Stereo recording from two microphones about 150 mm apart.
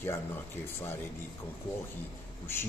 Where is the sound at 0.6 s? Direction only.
15° left (ahead or behind).